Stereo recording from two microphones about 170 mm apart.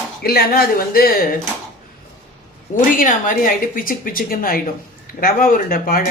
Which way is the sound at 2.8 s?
50° left (ahead or behind).